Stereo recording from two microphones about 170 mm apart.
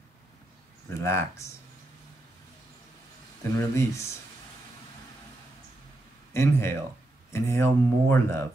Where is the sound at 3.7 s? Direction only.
15° left (ahead or behind).